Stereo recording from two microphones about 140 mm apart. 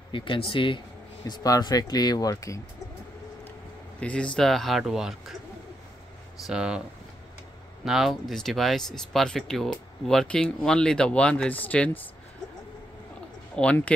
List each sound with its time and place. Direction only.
0.1 s speech: 35° left (ahead or behind)
4.0 s speech: 5° left (ahead or behind)
6.4 s speech: 5° right (ahead or behind)
7.8 s speech: 5° right (ahead or behind)
13.6 s speech: 10° left (ahead or behind)